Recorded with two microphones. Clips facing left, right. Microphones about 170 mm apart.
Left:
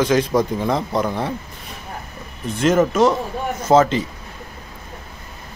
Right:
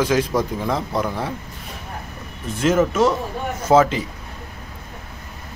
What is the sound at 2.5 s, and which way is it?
A man's voice, 5° right (ahead or behind).